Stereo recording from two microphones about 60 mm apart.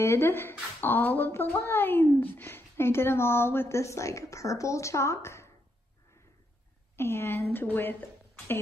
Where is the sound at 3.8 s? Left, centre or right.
Left.